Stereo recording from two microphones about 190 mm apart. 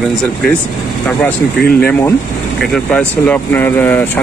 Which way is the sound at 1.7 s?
10° left (ahead or behind).